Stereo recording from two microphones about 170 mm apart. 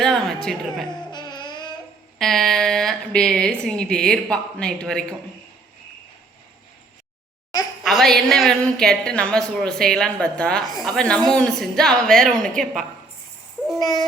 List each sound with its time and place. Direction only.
0.0 s speech: 5° left (ahead or behind)
1.1 s music: 25° left (ahead or behind)
2.1 s speech: centre (ahead or behind)
7.9 s speech: centre (ahead or behind)
13.7 s music: 20° left (ahead or behind)